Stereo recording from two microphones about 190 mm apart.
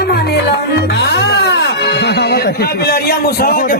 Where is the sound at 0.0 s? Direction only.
60° left (ahead or behind).